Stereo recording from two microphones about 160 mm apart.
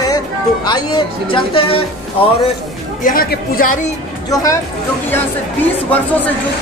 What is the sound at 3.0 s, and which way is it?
Speech, 60° left (ahead or behind).